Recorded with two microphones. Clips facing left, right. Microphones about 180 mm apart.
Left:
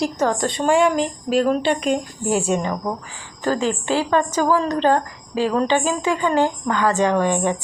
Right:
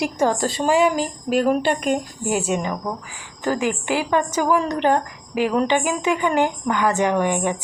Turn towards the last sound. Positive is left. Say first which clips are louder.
# left 1 dB
turn(degrees=-15)  # may be behind; listen again after turning